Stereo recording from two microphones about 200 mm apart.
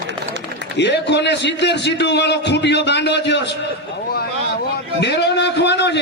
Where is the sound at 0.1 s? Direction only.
60° right (ahead or behind).